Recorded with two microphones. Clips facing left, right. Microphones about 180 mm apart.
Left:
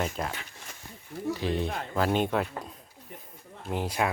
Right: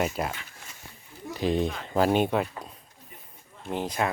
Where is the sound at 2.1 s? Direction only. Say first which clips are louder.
Right 2 dB; 5° right (ahead or behind).